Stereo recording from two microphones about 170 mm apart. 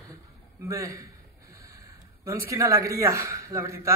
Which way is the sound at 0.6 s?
20° right (ahead or behind).